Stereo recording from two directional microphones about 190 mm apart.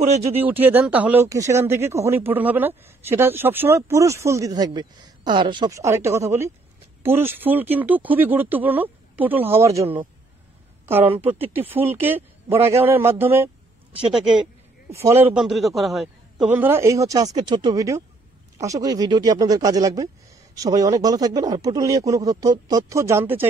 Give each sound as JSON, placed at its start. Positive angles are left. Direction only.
{"t": 0.0, "sound": "speech", "side_deg": -35}
{"t": 0.4, "sound": "speech", "side_deg": -10}
{"t": 11.1, "sound": "speech", "side_deg": -10}
{"t": 14.9, "sound": "speech", "side_deg": -15}
{"t": 15.3, "sound": "a man's voice", "side_deg": 0}